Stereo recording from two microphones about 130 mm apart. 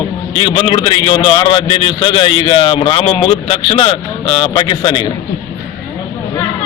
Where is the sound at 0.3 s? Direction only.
40° left (ahead or behind).